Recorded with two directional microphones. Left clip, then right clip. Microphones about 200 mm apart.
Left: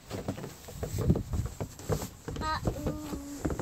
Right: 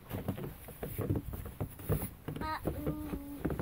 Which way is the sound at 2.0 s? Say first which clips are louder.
Left 5 dB; 5° right (ahead or behind).